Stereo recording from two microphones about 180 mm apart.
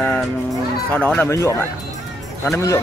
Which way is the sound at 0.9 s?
10° left (ahead or behind).